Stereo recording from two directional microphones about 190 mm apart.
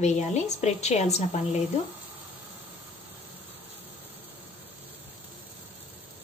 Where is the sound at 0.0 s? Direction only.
35° left (ahead or behind).